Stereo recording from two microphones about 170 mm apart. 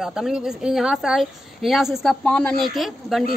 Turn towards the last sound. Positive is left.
turn(degrees=0)  # may be behind; listen again after turning